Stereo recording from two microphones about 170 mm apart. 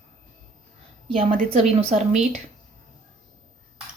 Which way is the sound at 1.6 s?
40° right (ahead or behind).